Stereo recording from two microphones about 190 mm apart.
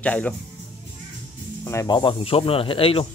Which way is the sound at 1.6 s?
15° left (ahead or behind).